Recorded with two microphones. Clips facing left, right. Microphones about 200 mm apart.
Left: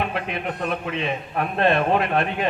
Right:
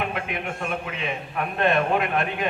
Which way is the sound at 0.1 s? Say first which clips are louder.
Left 2 dB; 35° left (ahead or behind).